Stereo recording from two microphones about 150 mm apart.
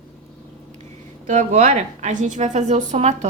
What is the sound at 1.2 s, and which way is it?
A woman's voice, 50° right (ahead or behind).